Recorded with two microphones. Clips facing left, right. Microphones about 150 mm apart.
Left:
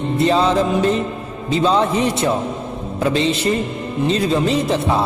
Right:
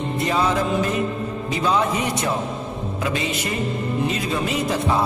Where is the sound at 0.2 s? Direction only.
25° left (ahead or behind).